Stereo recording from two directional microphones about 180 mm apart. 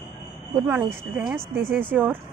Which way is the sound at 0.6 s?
15° right (ahead or behind).